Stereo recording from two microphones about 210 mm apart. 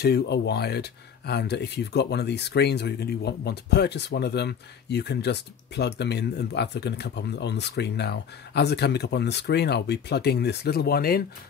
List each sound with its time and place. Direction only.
0.0 s speech: 50° left (ahead or behind)